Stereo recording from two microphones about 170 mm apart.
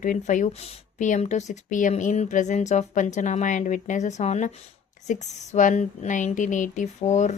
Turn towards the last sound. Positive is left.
turn(degrees=40)  # may be behind; listen again after turning